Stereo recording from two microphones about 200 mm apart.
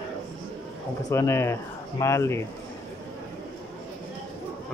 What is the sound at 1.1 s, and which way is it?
Speech, 15° left (ahead or behind).